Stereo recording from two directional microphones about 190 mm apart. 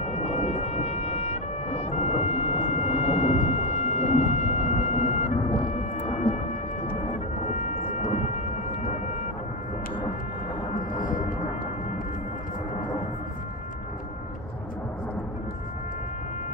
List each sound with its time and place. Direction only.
0.0 s music: 35° left (ahead or behind)
7.6 s thunder: 35° left (ahead or behind)
11.0 s a sound: 45° left (ahead or behind)